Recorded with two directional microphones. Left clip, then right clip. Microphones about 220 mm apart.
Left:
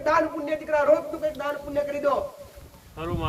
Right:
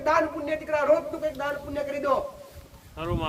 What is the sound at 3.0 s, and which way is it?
Speech, 40° right (ahead or behind).